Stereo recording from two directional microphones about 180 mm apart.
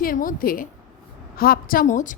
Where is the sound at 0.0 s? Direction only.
50° left (ahead or behind).